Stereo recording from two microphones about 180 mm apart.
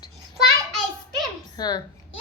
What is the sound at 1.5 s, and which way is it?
Speech, 20° left (ahead or behind).